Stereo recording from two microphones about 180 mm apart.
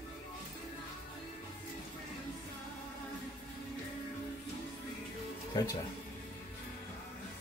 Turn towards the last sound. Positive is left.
turn(degrees=20)  # may be behind; listen again after turning